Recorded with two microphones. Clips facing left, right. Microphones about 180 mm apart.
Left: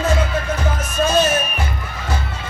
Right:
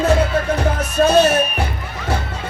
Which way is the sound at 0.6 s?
65° right (ahead or behind).